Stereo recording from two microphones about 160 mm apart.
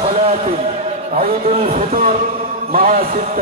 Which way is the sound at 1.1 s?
60° right (ahead or behind).